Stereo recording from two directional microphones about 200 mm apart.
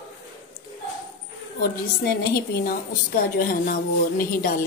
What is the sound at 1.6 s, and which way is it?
A woman's voice, 50° left (ahead or behind).